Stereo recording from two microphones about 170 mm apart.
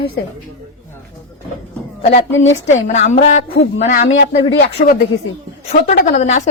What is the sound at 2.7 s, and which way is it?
A woman's voice, 45° left (ahead or behind).